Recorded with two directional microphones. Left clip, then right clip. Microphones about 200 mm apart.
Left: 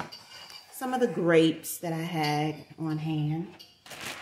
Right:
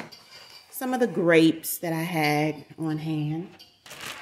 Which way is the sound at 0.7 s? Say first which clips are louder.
Right 2 dB; 40° right (ahead or behind).